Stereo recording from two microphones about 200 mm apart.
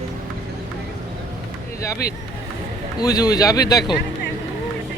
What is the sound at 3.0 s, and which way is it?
Speech, 20° left (ahead or behind).